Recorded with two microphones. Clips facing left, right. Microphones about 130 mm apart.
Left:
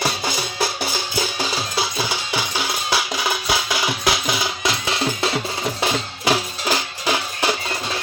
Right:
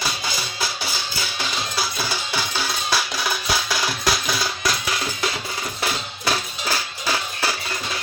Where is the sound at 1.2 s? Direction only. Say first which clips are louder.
Left 6 dB; 45° left (ahead or behind).